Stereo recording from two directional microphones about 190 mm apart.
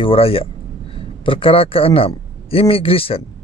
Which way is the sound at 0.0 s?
30° left (ahead or behind).